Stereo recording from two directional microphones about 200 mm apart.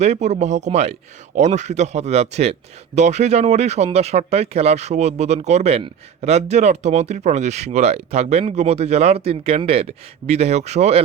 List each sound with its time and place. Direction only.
0.0 s speech: 35° right (ahead or behind)